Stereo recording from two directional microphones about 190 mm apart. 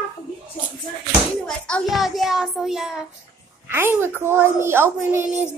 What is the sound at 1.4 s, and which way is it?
Child singing, 5° left (ahead or behind).